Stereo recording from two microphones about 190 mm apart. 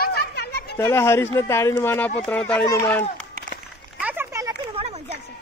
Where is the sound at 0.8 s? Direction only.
15° left (ahead or behind).